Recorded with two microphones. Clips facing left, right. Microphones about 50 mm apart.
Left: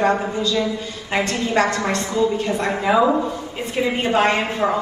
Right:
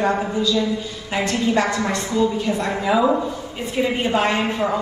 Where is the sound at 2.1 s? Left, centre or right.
Left.